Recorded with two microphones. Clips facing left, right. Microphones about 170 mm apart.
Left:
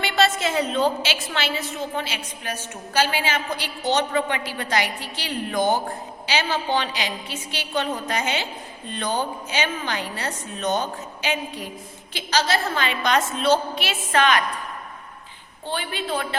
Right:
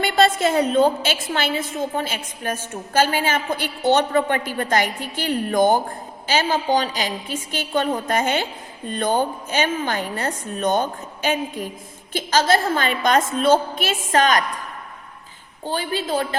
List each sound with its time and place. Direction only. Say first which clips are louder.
0.0 s a woman's voice: right 4 dB; 50° right (ahead or behind)
15.6 s a woman's voice: right 4 dB; 40° right (ahead or behind)